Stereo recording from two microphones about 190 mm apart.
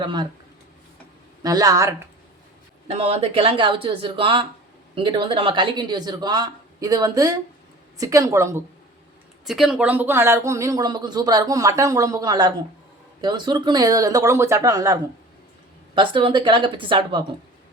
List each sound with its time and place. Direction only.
0.0 s speech: 25° right (ahead or behind)
1.4 s speech: 20° right (ahead or behind)
2.8 s speech: 30° right (ahead or behind); by 8.6 s 15° right (ahead or behind)
9.5 s speech: centre (ahead or behind); by 14.9 s 20° right (ahead or behind)
16.0 s speech: 25° right (ahead or behind)